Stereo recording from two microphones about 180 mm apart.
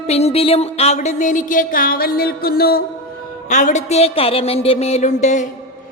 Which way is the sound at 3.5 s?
45° left (ahead or behind).